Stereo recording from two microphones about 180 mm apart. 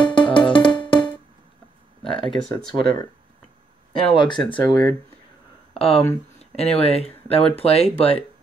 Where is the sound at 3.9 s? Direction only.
30° left (ahead or behind).